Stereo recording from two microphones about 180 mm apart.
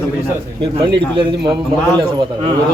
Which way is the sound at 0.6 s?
30° right (ahead or behind).